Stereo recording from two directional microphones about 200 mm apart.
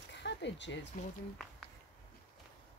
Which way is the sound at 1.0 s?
40° left (ahead or behind).